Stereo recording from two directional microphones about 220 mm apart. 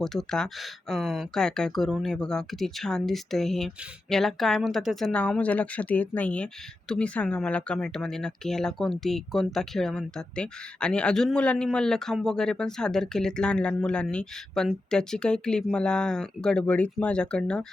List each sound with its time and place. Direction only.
0.0 s speech: centre (ahead or behind)